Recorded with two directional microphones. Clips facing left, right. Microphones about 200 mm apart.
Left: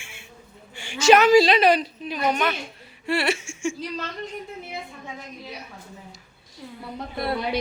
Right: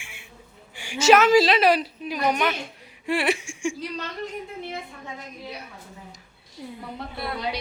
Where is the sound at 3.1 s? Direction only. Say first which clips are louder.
Even; 15° right (ahead or behind).